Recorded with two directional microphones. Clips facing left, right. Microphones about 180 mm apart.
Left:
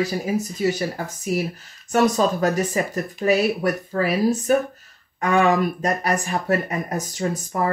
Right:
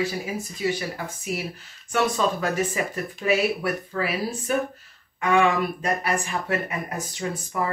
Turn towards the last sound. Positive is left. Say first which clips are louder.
# left 4 dB
turn(degrees=40)  # may be behind; listen again after turning